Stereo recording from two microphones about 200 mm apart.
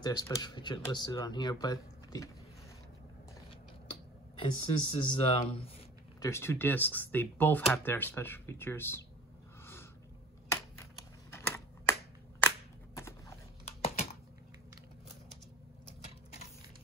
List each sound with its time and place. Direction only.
0.0 s speech: 20° left (ahead or behind)
4.4 s speech: 30° left (ahead or behind)
6.2 s speech: 15° left (ahead or behind)
11.2 s typing: 10° left (ahead or behind)
13.7 s typing: 30° left (ahead or behind)